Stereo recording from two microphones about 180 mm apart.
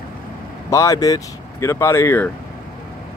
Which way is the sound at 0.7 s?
20° left (ahead or behind).